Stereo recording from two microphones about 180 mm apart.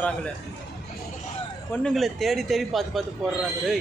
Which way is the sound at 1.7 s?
Centre (ahead or behind).